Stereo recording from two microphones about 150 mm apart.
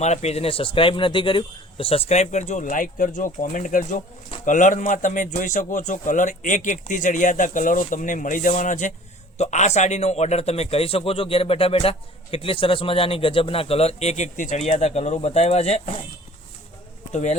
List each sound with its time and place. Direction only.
0.0 s a man's voice: 50° left (ahead or behind)
17.1 s speech: 50° left (ahead or behind)